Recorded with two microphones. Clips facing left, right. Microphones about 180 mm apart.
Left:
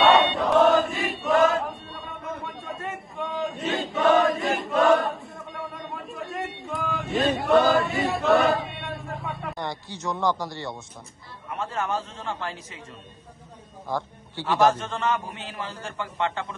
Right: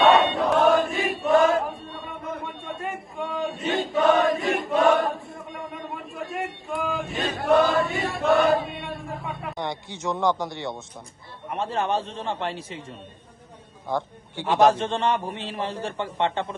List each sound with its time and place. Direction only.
0.0 s chant: centre (ahead or behind)
9.6 s a man's voice: 20° right (ahead or behind)
11.5 s a man's voice: 30° right (ahead or behind)
14.3 s a man's voice: 20° right (ahead or behind)
15.0 s a man's voice: 30° right (ahead or behind)